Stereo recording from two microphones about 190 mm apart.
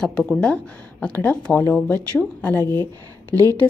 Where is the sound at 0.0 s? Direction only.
5° left (ahead or behind).